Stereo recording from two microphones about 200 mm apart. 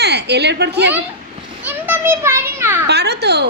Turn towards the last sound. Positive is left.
turn(degrees=-55)  # may be behind; listen again after turning